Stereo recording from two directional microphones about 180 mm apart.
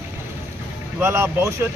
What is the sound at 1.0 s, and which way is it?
Speech, 15° right (ahead or behind).